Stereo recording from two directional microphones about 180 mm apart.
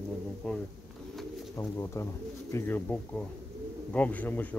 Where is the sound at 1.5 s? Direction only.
15° left (ahead or behind).